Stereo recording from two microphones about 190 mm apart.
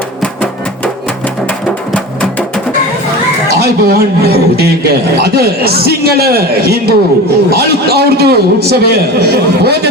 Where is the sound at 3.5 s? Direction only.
55° right (ahead or behind).